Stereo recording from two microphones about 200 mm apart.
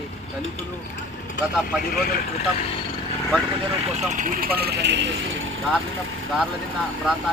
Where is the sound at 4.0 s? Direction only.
35° right (ahead or behind); by 5.1 s 60° right (ahead or behind).